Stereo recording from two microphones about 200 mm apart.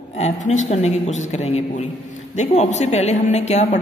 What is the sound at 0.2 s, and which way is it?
A man's voice, 35° left (ahead or behind).